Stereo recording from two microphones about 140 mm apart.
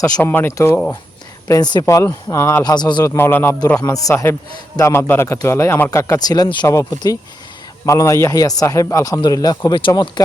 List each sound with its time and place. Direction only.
0.2 s speech: 15° left (ahead or behind)
1.5 s a man's voice: 30° left (ahead or behind)
2.7 s a man's voice: 30° left (ahead or behind)